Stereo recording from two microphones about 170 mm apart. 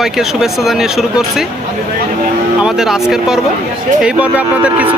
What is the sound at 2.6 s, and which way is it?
Speech, 5° right (ahead or behind).